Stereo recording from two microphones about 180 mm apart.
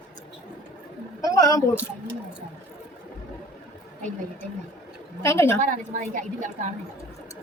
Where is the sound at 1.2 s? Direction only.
20° left (ahead or behind).